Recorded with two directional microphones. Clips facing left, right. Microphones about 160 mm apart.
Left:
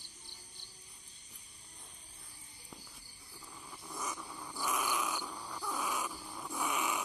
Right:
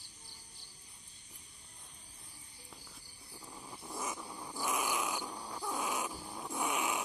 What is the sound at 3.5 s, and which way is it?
Purr, 25° right (ahead or behind).